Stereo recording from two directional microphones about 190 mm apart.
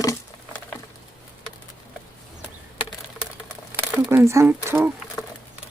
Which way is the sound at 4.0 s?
15° right (ahead or behind).